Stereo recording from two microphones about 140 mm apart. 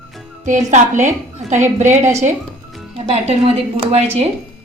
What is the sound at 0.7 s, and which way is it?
A woman's voice, 60° right (ahead or behind).